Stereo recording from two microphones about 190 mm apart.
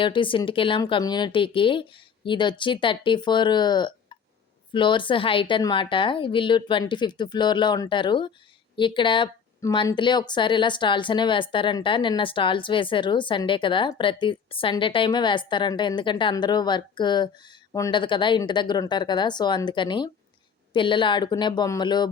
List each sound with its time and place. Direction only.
0.0 s speech: 25° left (ahead or behind)